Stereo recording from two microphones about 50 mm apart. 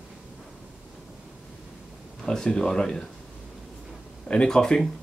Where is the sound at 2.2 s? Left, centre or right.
Centre.